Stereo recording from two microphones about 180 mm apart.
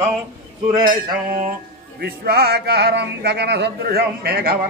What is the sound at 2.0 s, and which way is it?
Speech, 60° right (ahead or behind).